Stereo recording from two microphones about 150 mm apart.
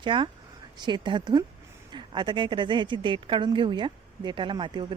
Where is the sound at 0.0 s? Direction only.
35° right (ahead or behind).